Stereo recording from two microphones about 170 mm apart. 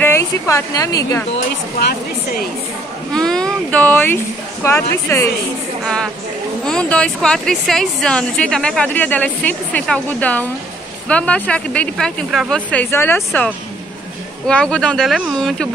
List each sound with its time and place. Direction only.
0.0 s speech: 15° left (ahead or behind)
3.1 s a woman's voice: 5° left (ahead or behind)
6.6 s a woman's voice: 5° left (ahead or behind)
14.5 s a woman's voice: 5° left (ahead or behind)